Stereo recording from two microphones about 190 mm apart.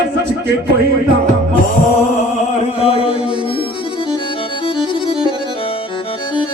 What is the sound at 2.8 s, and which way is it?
Mantra, 30° left (ahead or behind).